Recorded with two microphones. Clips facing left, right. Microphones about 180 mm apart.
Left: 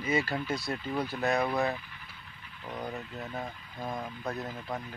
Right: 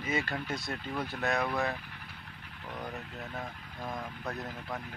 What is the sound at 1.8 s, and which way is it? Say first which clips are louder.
Vehicle: right 1 dB; 55° right (ahead or behind).